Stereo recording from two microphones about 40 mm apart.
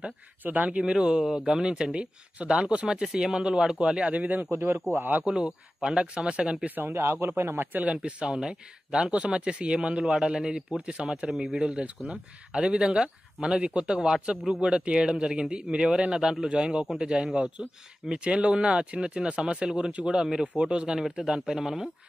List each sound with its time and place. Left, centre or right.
0.4 s speech: right
0.7 s speech: right
4.1 s speech: right
4.5 s speech: right
5.2 s speech: right
6.9 s speech: right
7.8 s speech: right; by 21.8 s centre